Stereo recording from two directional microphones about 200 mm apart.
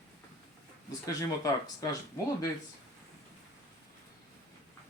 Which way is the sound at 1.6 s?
20° left (ahead or behind).